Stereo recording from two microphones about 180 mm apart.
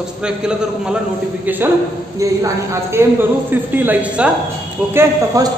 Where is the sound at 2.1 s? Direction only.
15° right (ahead or behind).